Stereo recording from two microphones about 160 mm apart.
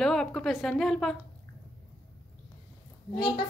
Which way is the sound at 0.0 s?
5° left (ahead or behind).